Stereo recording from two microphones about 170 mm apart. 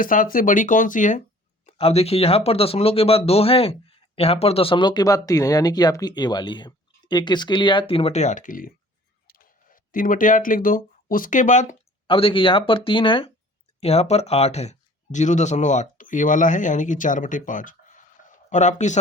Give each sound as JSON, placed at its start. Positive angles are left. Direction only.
{"t": 0.0, "sound": "speech", "side_deg": 55}
{"t": 1.6, "sound": "speech", "side_deg": 40}
{"t": 12.0, "sound": "speech", "side_deg": 30}